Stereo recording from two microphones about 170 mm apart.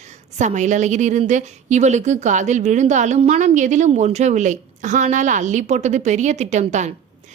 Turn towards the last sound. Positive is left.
turn(degrees=-40)  # may be behind; listen again after turning